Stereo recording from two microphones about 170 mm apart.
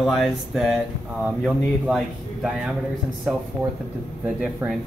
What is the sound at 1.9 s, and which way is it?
Speech, centre (ahead or behind).